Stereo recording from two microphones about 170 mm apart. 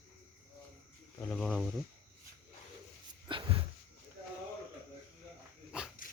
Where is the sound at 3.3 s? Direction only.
30° right (ahead or behind).